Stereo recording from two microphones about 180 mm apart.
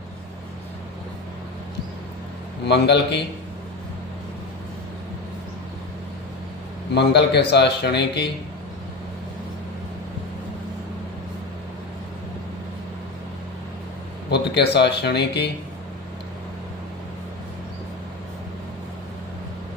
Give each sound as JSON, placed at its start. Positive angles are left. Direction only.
{"t": 2.6, "sound": "speech", "side_deg": 70}
{"t": 6.9, "sound": "speech", "side_deg": 70}
{"t": 14.3, "sound": "speech", "side_deg": 65}